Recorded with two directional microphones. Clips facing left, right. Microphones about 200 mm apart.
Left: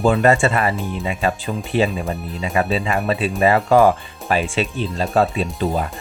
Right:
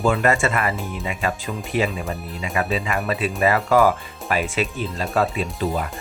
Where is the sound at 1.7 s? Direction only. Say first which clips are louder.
Left 4 dB; 30° left (ahead or behind).